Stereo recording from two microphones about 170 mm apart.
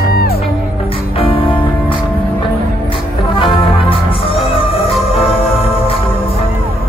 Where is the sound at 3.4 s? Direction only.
30° left (ahead or behind).